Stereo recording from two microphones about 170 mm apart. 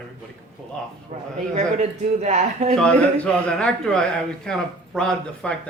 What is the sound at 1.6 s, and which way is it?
Speech, 40° right (ahead or behind).